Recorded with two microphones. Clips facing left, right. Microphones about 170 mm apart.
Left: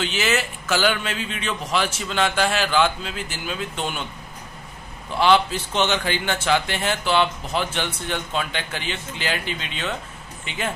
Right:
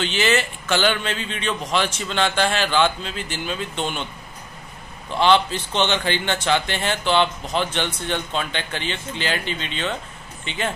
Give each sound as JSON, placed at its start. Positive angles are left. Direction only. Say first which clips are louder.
{"t": 0.0, "sound": "a man's voice", "louder": "right 2 dB", "side_deg": 5}
{"t": 5.2, "sound": "a man's voice", "louder": "even", "side_deg": 5}